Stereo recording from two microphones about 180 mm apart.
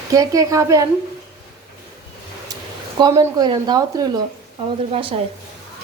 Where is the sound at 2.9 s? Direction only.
20° right (ahead or behind).